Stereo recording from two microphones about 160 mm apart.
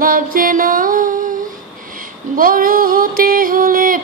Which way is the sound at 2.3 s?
60° right (ahead or behind).